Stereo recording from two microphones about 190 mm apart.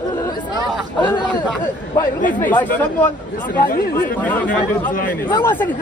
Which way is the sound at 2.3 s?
10° left (ahead or behind).